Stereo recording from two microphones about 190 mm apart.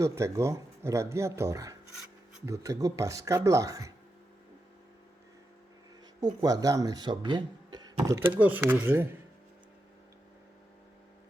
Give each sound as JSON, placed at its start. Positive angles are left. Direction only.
{"t": 0.0, "sound": "speech", "side_deg": -15}
{"t": 6.1, "sound": "speech", "side_deg": -20}